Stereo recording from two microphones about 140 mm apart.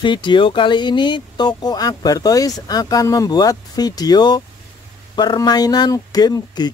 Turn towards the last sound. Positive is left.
turn(degrees=30)  # may be behind; listen again after turning